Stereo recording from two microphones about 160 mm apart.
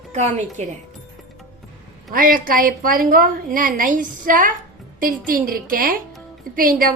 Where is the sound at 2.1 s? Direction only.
60° right (ahead or behind).